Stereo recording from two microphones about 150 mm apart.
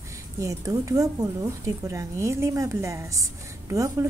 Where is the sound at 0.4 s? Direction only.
20° right (ahead or behind).